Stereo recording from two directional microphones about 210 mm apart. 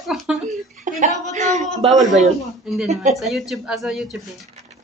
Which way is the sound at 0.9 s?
35° right (ahead or behind).